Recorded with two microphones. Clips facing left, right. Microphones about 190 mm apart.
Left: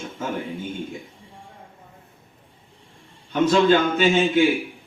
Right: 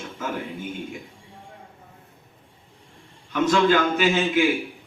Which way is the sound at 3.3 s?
30° left (ahead or behind).